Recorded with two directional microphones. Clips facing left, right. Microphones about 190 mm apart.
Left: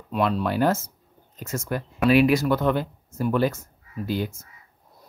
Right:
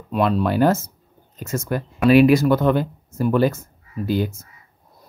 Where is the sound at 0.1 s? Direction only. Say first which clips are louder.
Right 4 dB; 45° right (ahead or behind).